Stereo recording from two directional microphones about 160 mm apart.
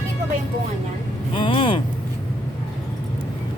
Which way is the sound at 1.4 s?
30° left (ahead or behind).